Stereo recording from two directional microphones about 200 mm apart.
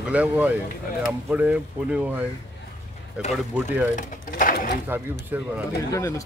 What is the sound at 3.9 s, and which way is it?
Speech, 40° left (ahead or behind).